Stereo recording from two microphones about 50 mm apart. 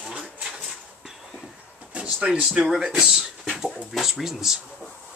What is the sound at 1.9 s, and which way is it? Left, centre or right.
Speech, right.